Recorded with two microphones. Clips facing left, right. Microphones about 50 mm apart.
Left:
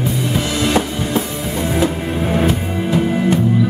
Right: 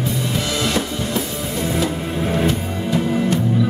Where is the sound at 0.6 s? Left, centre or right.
Left.